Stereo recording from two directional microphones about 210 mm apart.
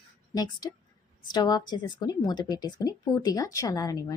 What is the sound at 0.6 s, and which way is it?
A woman's voice, 15° left (ahead or behind).